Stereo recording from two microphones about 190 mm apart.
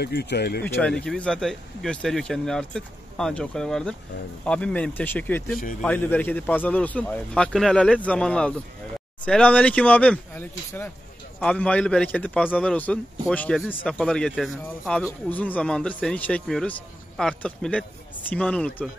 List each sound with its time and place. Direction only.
0.0 s speech: 55° left (ahead or behind)
0.7 s a man's voice: 5° left (ahead or behind)